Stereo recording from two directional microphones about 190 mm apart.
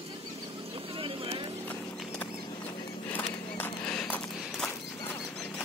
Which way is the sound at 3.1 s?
5° left (ahead or behind).